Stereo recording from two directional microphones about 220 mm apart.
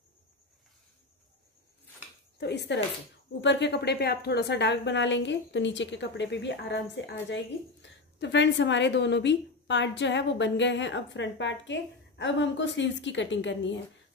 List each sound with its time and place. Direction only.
2.3 s a woman's voice: 50° left (ahead or behind)